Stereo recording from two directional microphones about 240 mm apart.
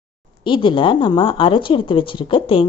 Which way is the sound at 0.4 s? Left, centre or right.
Left.